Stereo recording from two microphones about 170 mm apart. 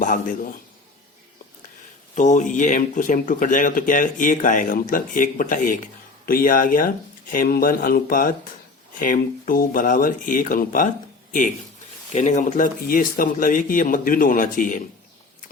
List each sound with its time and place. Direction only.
0.0 s speech: 50° left (ahead or behind)
2.1 s speech: 45° left (ahead or behind)